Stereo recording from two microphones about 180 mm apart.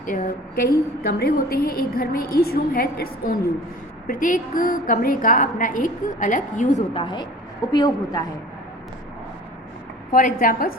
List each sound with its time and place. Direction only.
0.0 s a woman's voice: 45° left (ahead or behind)
6.9 s a woman's voice: 25° left (ahead or behind)
10.1 s a woman's voice: 50° left (ahead or behind)